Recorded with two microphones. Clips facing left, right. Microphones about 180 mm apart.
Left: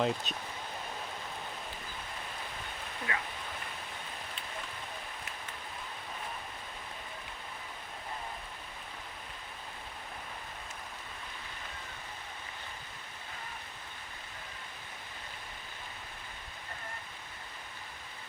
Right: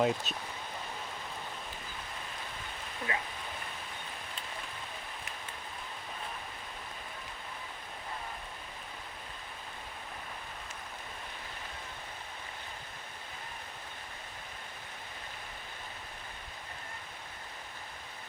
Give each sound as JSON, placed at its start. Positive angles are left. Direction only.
{"t": 0.0, "sound": "speech", "side_deg": -5}
{"t": 3.1, "sound": "speech", "side_deg": -25}